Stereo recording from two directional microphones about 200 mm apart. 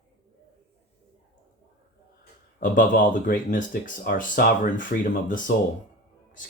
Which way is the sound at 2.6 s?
40° left (ahead or behind).